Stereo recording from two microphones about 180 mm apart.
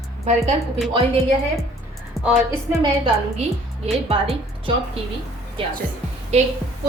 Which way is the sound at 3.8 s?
35° right (ahead or behind).